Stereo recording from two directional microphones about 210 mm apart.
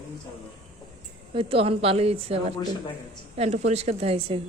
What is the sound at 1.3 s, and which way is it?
A woman's voice, 25° right (ahead or behind).